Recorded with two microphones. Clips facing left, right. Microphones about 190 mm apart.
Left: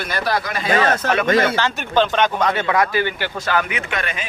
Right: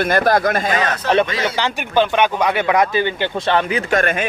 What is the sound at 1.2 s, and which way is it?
Speech, 50° left (ahead or behind).